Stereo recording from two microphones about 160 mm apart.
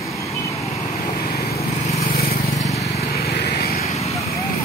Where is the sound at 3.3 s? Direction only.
80° left.